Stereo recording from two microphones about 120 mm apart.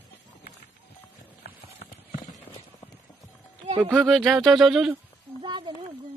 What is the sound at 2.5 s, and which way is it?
Clip-clop, 50° left (ahead or behind).